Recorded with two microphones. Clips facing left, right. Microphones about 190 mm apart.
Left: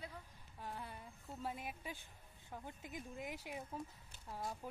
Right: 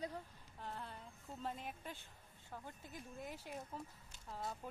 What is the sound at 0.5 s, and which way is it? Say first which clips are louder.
Speech: even; 10° left (ahead or behind).